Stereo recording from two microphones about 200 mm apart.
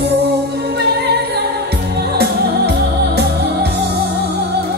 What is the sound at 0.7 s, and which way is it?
Music, 55° right (ahead or behind).